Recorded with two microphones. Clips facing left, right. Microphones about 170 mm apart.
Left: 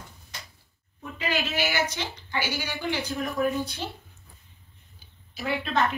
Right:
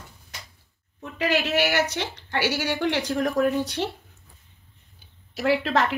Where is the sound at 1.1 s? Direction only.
80° right.